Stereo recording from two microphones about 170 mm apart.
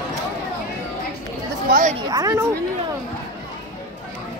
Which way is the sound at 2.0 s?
20° right (ahead or behind).